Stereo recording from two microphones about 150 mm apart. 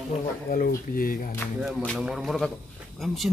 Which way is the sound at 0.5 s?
70° left (ahead or behind).